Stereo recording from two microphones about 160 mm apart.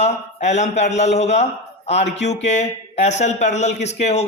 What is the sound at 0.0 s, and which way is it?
Speech, 45° left (ahead or behind).